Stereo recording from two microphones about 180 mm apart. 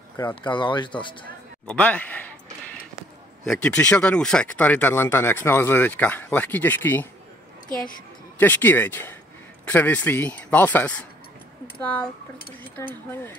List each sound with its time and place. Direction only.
0.4 s speech: 25° left (ahead or behind)
1.7 s speech: 5° left (ahead or behind)
3.4 s speech: 5° left (ahead or behind)
8.4 s speech: 10° left (ahead or behind)